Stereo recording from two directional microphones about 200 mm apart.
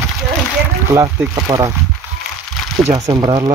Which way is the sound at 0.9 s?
15° right (ahead or behind).